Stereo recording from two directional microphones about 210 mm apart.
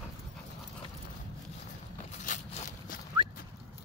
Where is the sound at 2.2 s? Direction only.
35° left (ahead or behind).